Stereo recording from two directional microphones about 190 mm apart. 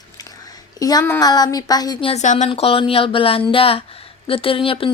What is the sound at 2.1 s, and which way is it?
Speech, 40° left (ahead or behind).